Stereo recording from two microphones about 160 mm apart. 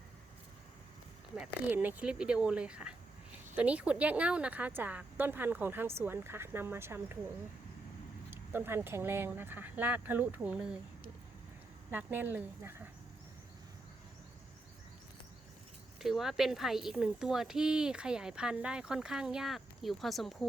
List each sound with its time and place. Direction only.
1.4 s a woman's voice: 10° right (ahead or behind)
8.3 s a woman's voice: 15° right (ahead or behind)
11.9 s a woman's voice: 10° right (ahead or behind)
16.0 s a woman's voice: centre (ahead or behind)